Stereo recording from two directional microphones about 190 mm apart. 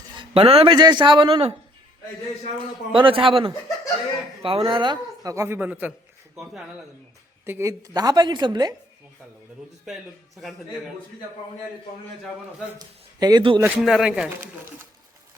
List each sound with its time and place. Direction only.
0.2 s a man's voice: 30° right (ahead or behind)
2.6 s a man's voice: 25° right (ahead or behind); by 6.7 s centre (ahead or behind)
7.4 s a man's voice: 15° right (ahead or behind)
13.1 s speech: 20° right (ahead or behind)
13.6 s speech: 5° right (ahead or behind)